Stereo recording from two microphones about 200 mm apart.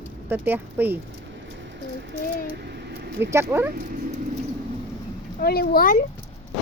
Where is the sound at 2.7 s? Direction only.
55° right (ahead or behind).